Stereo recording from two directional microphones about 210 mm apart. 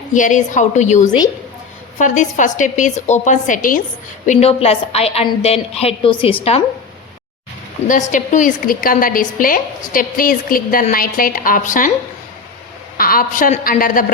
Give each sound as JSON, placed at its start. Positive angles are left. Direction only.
{"t": 0.1, "sound": "a woman's voice", "side_deg": 35}
{"t": 8.1, "sound": "a woman's voice", "side_deg": 35}
{"t": 13.0, "sound": "a woman's voice", "side_deg": 45}